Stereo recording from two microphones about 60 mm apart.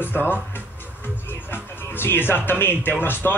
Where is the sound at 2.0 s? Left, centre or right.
Left.